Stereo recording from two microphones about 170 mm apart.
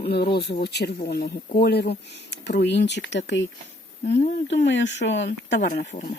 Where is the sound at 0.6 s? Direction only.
80° left.